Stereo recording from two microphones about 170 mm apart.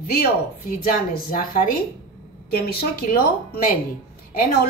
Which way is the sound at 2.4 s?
65° left (ahead or behind).